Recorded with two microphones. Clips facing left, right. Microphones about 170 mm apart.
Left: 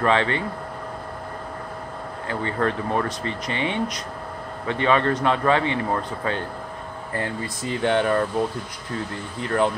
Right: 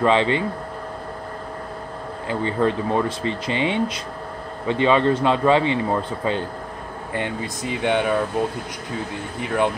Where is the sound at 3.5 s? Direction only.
25° right (ahead or behind).